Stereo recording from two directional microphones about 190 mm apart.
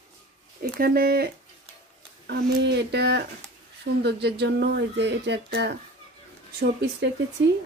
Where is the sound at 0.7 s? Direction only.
55° right (ahead or behind).